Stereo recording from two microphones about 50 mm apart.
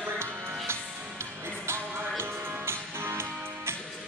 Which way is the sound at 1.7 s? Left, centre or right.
Right.